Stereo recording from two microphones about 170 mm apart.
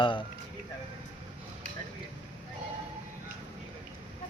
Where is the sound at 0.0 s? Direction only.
30° left (ahead or behind).